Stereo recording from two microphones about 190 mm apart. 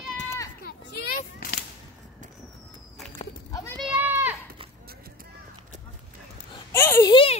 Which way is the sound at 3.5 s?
15° left (ahead or behind).